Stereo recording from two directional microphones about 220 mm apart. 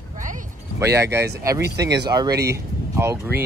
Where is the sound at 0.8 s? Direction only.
10° right (ahead or behind).